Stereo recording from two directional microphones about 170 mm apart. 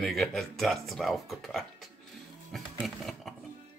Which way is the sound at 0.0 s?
Centre (ahead or behind).